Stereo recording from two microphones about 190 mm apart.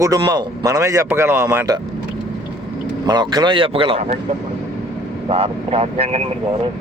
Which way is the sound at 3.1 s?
20° right (ahead or behind).